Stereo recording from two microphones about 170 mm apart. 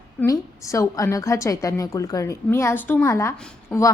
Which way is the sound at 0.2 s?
20° left (ahead or behind).